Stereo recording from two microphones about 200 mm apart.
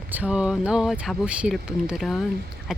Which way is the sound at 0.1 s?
5° right (ahead or behind).